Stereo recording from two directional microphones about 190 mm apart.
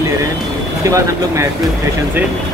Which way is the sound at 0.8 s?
15° right (ahead or behind).